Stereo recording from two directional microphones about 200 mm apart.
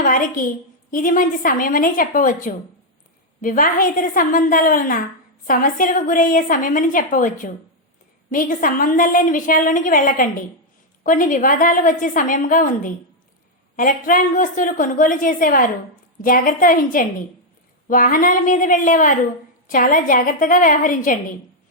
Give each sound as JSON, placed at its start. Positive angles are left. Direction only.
{"t": 0.0, "sound": "a woman's voice", "side_deg": 40}